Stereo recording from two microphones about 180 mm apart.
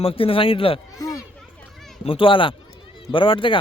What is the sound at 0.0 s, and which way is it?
Speech, 30° left (ahead or behind).